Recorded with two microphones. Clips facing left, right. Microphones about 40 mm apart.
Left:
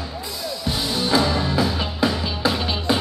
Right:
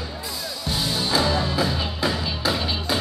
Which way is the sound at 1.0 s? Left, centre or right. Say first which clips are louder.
Left 3 dB; centre.